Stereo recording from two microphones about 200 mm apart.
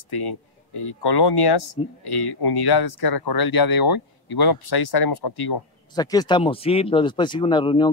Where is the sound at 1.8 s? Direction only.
25° left (ahead or behind).